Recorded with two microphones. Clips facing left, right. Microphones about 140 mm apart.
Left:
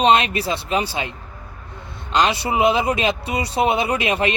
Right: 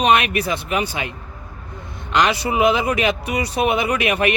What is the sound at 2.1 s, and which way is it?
Speech, 25° left (ahead or behind).